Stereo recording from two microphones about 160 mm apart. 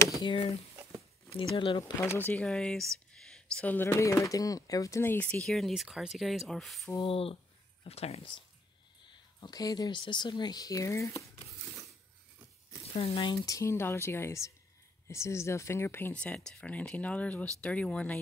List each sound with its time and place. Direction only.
0.2 s speech: 30° left (ahead or behind)
1.8 s speech: 15° left (ahead or behind)
7.0 s speech: 35° left (ahead or behind)
9.4 s speech: 25° left (ahead or behind)
12.8 s speech: 35° left (ahead or behind); by 18.2 s 5° left (ahead or behind)